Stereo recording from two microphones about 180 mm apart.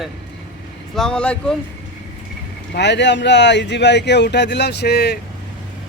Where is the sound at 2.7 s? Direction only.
75° left (ahead or behind).